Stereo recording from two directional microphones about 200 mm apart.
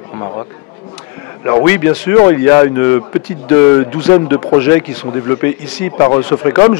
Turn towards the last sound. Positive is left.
turn(degrees=15)  # may be behind; listen again after turning